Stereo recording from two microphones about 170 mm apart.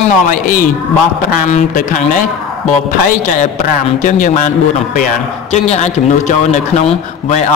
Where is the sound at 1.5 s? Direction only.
50° left (ahead or behind).